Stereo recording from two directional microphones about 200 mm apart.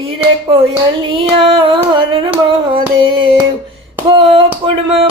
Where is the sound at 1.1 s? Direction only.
25° right (ahead or behind).